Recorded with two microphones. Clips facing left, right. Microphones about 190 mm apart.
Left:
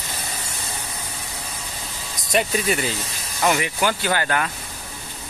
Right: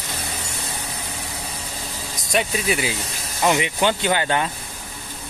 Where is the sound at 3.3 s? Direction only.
20° right (ahead or behind).